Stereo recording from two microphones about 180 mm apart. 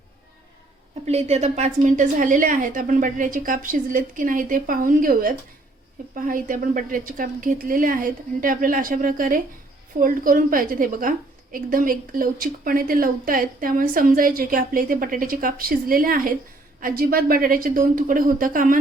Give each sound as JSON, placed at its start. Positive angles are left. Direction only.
{"t": 1.0, "sound": "speech", "side_deg": -35}